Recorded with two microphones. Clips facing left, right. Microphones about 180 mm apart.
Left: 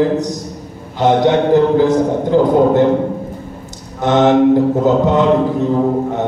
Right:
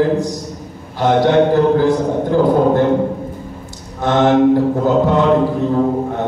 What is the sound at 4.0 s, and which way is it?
A man's voice, 20° left (ahead or behind).